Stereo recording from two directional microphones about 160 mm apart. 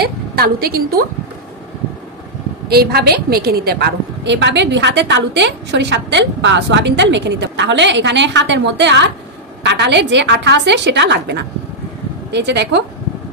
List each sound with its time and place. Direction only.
0.0 s a woman's voice: 70° right (ahead or behind)
2.7 s a woman's voice: 80° right